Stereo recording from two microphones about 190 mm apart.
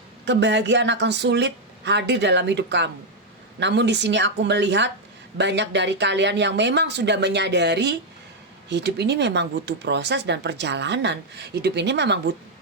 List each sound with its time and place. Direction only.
0.3 s speech: 65° right (ahead or behind)